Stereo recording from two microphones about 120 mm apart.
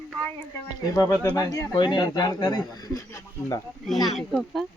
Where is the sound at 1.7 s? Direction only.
40° left (ahead or behind).